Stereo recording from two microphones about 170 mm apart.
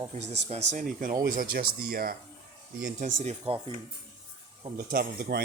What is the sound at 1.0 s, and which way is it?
Speech, 55° right (ahead or behind).